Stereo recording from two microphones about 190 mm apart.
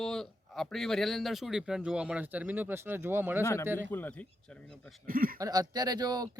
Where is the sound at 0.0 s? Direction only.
Centre (ahead or behind).